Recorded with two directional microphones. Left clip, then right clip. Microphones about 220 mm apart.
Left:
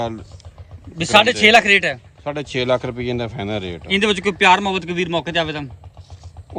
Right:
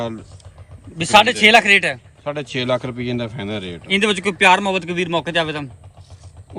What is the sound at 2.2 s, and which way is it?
Speech, 30° left (ahead or behind).